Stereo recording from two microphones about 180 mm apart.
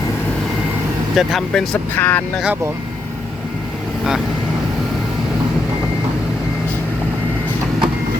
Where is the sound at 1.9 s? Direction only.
10° left (ahead or behind).